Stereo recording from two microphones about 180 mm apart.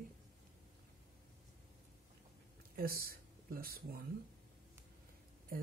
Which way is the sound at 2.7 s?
55° right (ahead or behind).